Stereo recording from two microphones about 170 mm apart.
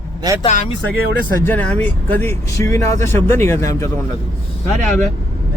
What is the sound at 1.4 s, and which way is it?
Speech, 10° left (ahead or behind).